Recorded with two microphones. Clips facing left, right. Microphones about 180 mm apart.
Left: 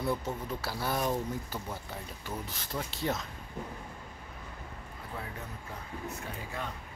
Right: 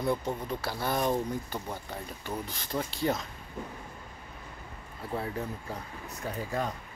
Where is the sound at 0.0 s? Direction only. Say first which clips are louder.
Right 3 dB; 5° left (ahead or behind).